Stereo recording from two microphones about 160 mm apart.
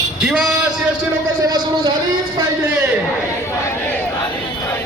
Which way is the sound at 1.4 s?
25° right (ahead or behind).